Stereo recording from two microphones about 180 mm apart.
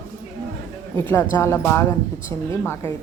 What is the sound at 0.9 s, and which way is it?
A woman's voice, 15° left (ahead or behind).